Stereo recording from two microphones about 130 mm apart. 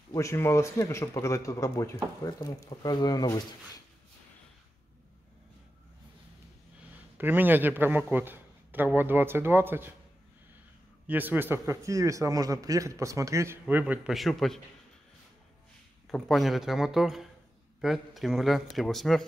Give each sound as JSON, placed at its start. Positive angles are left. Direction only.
{"t": 0.1, "sound": "speech", "side_deg": 20}
{"t": 7.2, "sound": "speech", "side_deg": -15}
{"t": 11.1, "sound": "a man's voice", "side_deg": -15}
{"t": 14.0, "sound": "speech", "side_deg": 0}
{"t": 16.1, "sound": "speech", "side_deg": 0}